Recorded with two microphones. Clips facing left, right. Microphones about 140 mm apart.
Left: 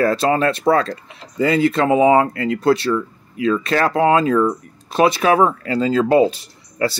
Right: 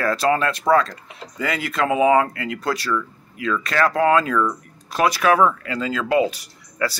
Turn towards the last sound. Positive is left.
turn(degrees=25)  # may be behind; listen again after turning